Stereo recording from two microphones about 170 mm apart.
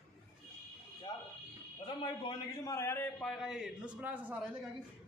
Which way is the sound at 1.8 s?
25° left (ahead or behind).